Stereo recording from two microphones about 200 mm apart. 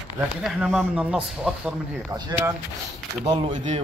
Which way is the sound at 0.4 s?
5° right (ahead or behind).